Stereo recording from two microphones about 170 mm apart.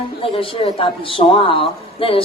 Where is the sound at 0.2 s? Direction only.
35° left (ahead or behind).